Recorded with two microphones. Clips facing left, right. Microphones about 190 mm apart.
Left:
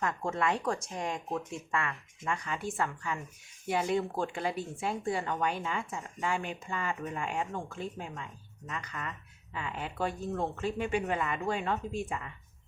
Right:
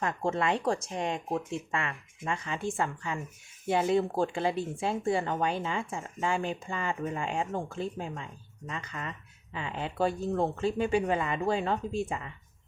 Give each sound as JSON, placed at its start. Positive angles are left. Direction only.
{"t": 0.0, "sound": "speech", "side_deg": -25}